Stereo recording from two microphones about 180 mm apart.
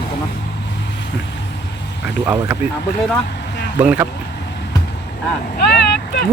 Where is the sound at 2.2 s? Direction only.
15° right (ahead or behind).